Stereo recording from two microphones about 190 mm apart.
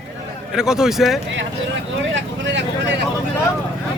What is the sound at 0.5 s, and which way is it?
Speech, 5° right (ahead or behind).